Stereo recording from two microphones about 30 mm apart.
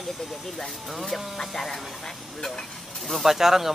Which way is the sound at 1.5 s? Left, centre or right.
Centre.